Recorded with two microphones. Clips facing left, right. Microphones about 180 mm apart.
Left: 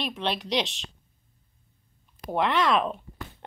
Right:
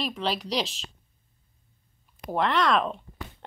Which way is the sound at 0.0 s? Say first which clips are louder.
Right 1 dB; centre (ahead or behind).